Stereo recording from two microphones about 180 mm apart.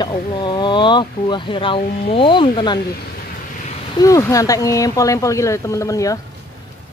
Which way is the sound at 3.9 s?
20° left (ahead or behind).